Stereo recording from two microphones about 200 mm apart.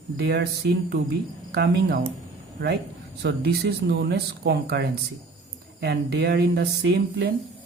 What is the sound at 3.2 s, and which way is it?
Speech, 55° right (ahead or behind).